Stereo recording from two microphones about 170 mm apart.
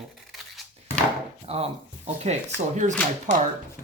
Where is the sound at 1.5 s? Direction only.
35° right (ahead or behind).